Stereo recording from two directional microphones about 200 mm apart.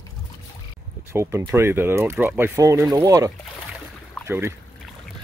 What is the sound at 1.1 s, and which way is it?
Speech, 10° right (ahead or behind).